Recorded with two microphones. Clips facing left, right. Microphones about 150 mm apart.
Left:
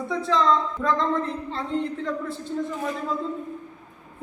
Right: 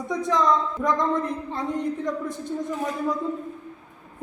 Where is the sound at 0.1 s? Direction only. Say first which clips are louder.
Even; 15° right (ahead or behind).